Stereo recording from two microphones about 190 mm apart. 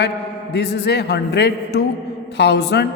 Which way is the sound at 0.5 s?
60° left (ahead or behind).